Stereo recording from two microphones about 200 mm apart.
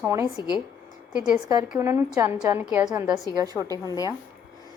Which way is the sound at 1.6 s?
10° right (ahead or behind).